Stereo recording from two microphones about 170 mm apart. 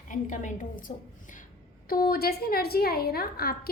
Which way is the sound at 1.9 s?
60° left (ahead or behind).